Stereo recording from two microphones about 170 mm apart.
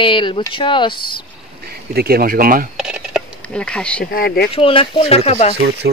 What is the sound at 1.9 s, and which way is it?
Speech, 60° right (ahead or behind).